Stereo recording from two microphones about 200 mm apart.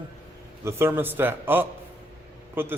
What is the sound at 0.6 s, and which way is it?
A man's voice, 10° right (ahead or behind).